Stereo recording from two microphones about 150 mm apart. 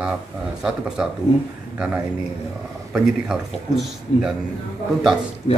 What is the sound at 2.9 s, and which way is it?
Speech, 5° right (ahead or behind).